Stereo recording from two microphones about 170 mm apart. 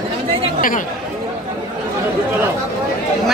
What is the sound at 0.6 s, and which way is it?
Speech, 55° left (ahead or behind).